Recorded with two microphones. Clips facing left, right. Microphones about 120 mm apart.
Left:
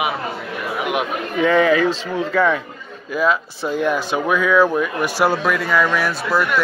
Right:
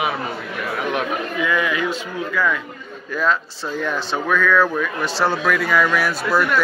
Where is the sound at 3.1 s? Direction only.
10° left (ahead or behind).